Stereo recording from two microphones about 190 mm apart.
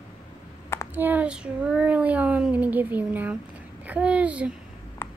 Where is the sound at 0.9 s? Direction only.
10° right (ahead or behind).